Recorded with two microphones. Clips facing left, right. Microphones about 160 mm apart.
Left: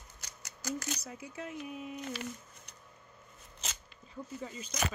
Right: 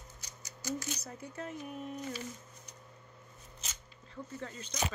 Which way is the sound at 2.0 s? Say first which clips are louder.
Even; 80° left.